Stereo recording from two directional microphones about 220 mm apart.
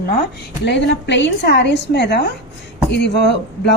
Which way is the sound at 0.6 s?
55° left (ahead or behind).